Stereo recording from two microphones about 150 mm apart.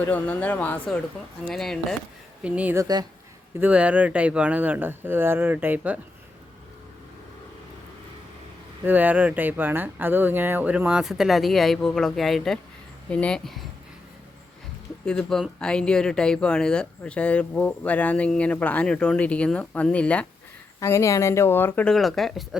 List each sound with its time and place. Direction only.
0.0 s speech: 10° left (ahead or behind)
2.4 s speech: 10° right (ahead or behind)
2.8 s speech: 25° right (ahead or behind)
3.6 s speech: 10° right (ahead or behind)
8.8 s speech: 10° right (ahead or behind)
15.0 s speech: 5° left (ahead or behind)
20.7 s speech: 20° left (ahead or behind)
21.9 s speech: centre (ahead or behind)